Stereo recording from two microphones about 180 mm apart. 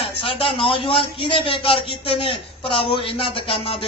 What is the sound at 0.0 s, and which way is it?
A man's voice, 30° left (ahead or behind).